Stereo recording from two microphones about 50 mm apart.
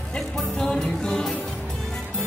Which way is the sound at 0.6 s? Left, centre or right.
Centre.